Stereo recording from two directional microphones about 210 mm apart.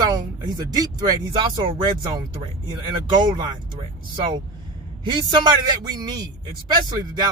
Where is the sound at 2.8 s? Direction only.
20° right (ahead or behind).